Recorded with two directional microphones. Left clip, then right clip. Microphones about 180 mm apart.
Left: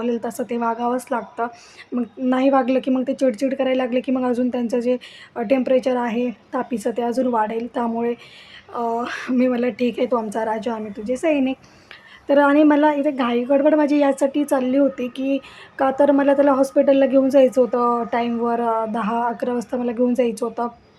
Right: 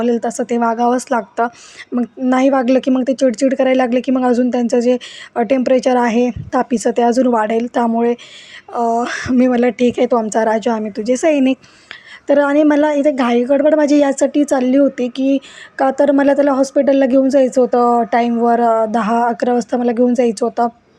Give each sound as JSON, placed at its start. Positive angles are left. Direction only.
{"t": 0.0, "sound": "a woman's voice", "side_deg": -25}